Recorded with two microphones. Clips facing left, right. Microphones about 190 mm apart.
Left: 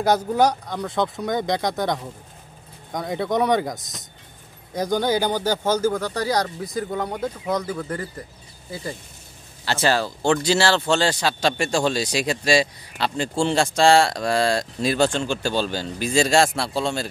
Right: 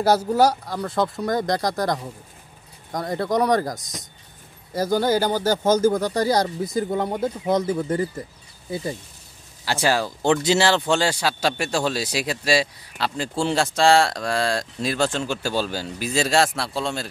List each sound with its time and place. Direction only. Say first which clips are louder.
0.0 s speech: right 1 dB; 5° right (ahead or behind)
6.4 s speech: right 3 dB; 25° right (ahead or behind)
9.7 s speech: even; 10° right (ahead or behind)